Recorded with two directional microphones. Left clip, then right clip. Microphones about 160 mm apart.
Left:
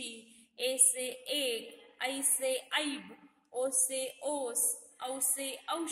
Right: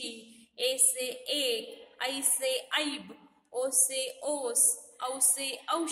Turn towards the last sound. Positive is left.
turn(degrees=10)  # may be behind; listen again after turning